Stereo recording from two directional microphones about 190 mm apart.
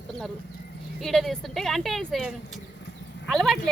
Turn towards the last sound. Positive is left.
turn(degrees=0)  # may be behind; listen again after turning